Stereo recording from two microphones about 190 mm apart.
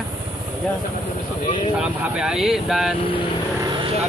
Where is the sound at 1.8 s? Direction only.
5° right (ahead or behind).